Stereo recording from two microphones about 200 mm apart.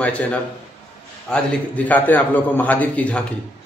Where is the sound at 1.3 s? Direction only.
10° left (ahead or behind).